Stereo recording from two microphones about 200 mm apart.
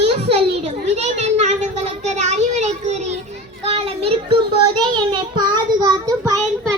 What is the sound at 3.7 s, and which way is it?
Child singing, 30° right (ahead or behind).